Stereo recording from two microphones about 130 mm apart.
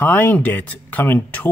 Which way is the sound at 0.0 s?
15° left (ahead or behind).